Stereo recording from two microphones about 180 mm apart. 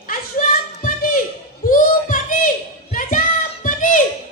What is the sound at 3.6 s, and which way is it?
Children playing, 45° left (ahead or behind).